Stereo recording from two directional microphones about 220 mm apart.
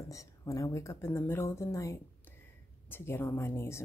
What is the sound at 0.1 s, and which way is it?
A woman's voice, 15° left (ahead or behind).